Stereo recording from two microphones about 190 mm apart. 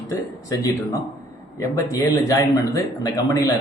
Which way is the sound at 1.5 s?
20° left (ahead or behind).